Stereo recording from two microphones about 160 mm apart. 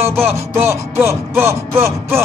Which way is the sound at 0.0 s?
15° right (ahead or behind).